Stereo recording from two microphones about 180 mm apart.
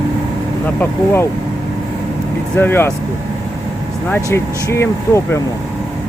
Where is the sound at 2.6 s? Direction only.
10° left (ahead or behind).